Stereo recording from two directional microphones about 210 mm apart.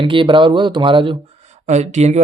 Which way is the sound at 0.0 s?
25° right (ahead or behind).